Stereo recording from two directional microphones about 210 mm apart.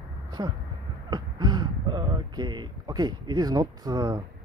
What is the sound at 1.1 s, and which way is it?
Speech, 20° right (ahead or behind).